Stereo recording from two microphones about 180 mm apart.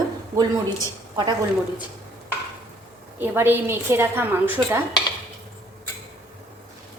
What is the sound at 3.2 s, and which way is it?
A woman's voice, 10° right (ahead or behind).